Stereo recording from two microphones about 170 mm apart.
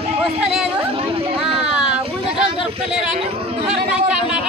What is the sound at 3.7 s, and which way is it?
Speech, 5° right (ahead or behind).